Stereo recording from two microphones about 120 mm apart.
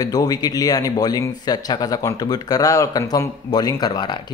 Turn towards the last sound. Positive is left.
turn(degrees=35)  # may be behind; listen again after turning